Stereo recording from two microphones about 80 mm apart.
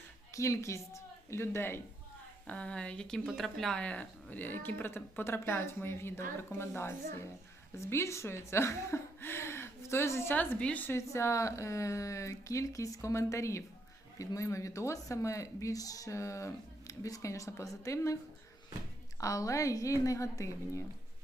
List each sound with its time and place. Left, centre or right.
0.3 s a woman's voice: left
2.5 s speech: centre
3.8 s speech: centre
10.9 s speech: left
19.2 s a woman's voice: left